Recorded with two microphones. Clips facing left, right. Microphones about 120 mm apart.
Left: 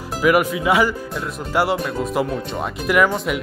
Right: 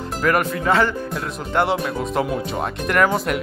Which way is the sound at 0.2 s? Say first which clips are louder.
Left 3 dB; 10° left (ahead or behind).